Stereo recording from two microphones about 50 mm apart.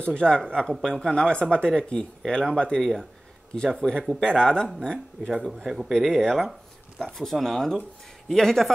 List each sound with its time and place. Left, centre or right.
0.0 s speech: centre
2.8 s speech: centre
5.4 s speech: centre
5.9 s speech: centre